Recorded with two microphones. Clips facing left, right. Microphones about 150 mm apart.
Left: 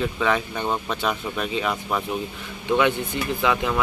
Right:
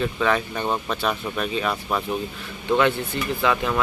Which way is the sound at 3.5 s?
15° left (ahead or behind).